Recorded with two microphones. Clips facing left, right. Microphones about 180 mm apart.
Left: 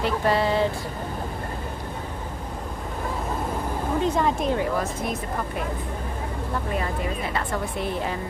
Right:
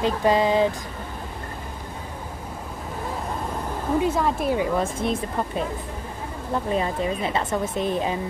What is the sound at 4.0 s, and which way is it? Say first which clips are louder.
Speech: even; 5° right (ahead or behind).